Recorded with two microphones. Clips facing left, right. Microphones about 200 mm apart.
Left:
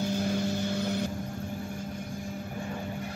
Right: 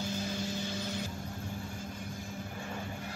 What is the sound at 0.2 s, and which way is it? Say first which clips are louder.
Vehicle: left 7 dB; 60° left (ahead or behind).